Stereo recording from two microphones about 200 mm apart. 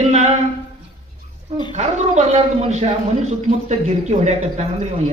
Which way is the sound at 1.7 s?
35° right (ahead or behind).